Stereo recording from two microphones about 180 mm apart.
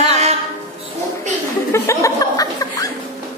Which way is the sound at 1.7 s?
15° left (ahead or behind).